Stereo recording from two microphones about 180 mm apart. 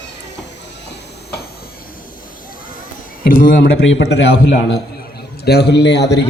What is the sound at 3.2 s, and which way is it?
Speech, 55° left (ahead or behind).